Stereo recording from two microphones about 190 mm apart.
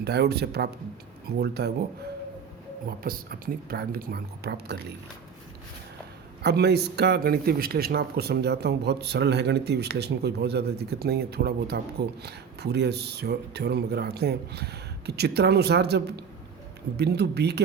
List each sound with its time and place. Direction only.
0.0 s a man's voice: 60° right (ahead or behind)
3.0 s a woman's voice: 50° right (ahead or behind)
6.4 s a man's voice: 60° right (ahead or behind)